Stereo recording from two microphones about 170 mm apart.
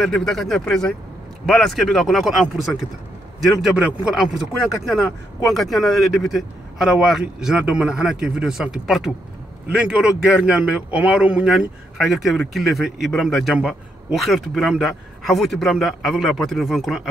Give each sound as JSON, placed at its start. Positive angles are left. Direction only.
{"t": 0.0, "sound": "a man's voice", "side_deg": 0}